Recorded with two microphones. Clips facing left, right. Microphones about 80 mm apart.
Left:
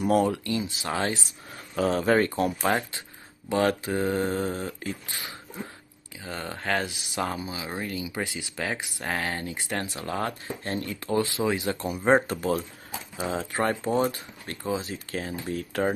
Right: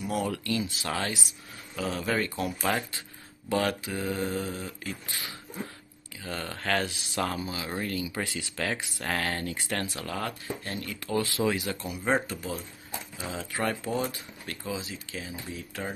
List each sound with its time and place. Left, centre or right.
0.3 s speech: left
1.8 s speech: left
5.0 s speech: left
13.2 s speech: left